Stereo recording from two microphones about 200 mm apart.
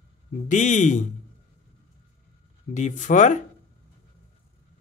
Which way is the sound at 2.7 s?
35° left (ahead or behind).